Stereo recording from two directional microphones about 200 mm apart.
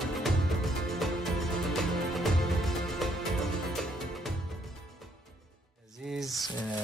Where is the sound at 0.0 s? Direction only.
Centre (ahead or behind).